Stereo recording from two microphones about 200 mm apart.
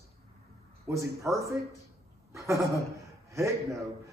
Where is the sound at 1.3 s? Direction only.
15° right (ahead or behind).